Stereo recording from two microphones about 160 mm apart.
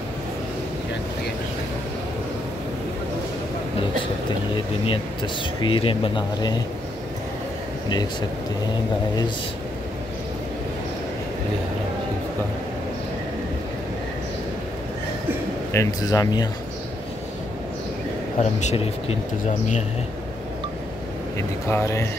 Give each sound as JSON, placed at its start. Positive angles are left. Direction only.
{"t": 4.8, "sound": "speech", "side_deg": 30}
{"t": 15.7, "sound": "speech", "side_deg": 20}
{"t": 18.4, "sound": "speech", "side_deg": 45}
{"t": 21.4, "sound": "speech", "side_deg": 15}